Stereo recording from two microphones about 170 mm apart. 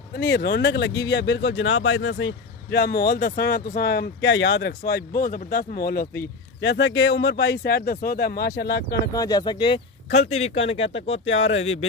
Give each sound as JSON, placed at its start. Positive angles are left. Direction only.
{"t": 0.1, "sound": "speech", "side_deg": 80}
{"t": 9.1, "sound": "speech", "side_deg": 20}
{"t": 10.1, "sound": "speech", "side_deg": 40}